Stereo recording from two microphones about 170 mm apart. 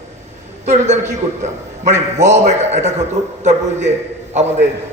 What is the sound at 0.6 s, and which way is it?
Speech, 40° right (ahead or behind).